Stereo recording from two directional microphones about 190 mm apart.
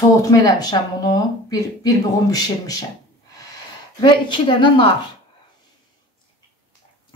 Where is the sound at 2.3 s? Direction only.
20° left (ahead or behind).